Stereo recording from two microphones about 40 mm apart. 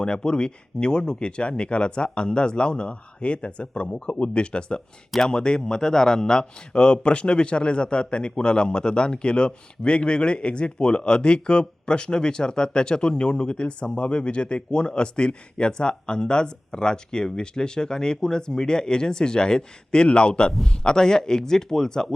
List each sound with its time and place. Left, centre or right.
0.0 s a man's voice: left